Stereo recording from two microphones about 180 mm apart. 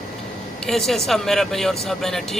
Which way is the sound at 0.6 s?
Centre (ahead or behind).